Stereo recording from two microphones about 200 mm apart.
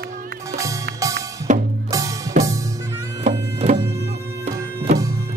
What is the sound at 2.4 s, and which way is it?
Music, 40° right (ahead or behind).